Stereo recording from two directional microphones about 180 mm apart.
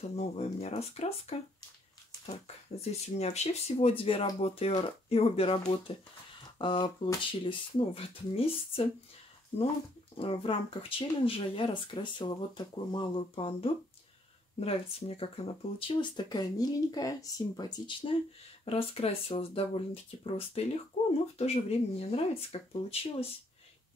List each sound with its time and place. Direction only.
0.1 s speech: 35° left (ahead or behind)
2.2 s speech: 35° left (ahead or behind)
10.1 s speech: 30° left (ahead or behind)